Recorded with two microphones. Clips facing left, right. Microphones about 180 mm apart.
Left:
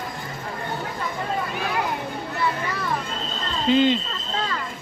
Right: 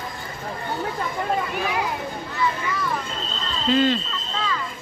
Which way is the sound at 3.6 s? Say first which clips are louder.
Left 1 dB; 20° left (ahead or behind).